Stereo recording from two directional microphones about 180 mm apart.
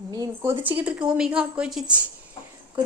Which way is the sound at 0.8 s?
5° right (ahead or behind).